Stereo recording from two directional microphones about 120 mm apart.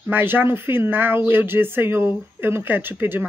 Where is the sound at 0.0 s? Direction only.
15° right (ahead or behind).